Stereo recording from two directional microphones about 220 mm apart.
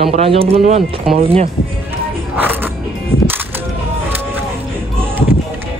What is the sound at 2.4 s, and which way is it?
Music, 10° right (ahead or behind).